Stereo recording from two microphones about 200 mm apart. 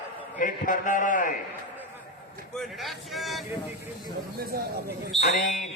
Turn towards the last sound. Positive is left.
turn(degrees=40)  # may be behind; listen again after turning